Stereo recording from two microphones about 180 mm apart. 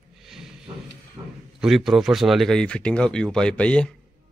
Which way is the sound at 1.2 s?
15° right (ahead or behind).